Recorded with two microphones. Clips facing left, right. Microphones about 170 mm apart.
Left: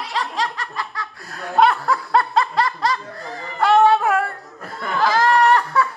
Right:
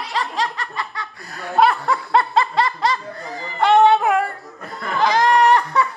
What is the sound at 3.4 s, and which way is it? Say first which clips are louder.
Music: right 1 dB; centre (ahead or behind).